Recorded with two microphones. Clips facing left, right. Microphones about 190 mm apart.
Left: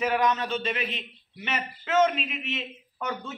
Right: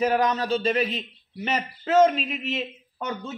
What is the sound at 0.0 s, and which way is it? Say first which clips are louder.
A man's voice: right 3 dB; 35° right (ahead or behind).